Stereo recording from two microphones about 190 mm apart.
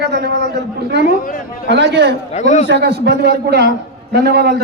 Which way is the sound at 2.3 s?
35° left (ahead or behind).